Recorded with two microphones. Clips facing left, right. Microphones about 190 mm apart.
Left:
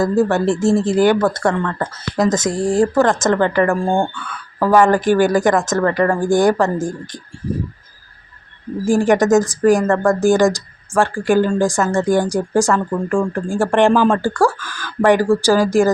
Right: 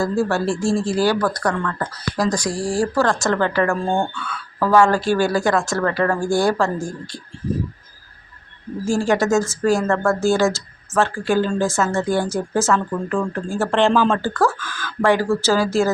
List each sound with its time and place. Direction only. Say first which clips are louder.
0.0 s speech: left 4 dB; 20° left (ahead or behind)
8.8 s speech: left 5 dB; 15° left (ahead or behind)